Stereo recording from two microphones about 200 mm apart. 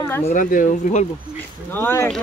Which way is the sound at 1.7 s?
10° left (ahead or behind).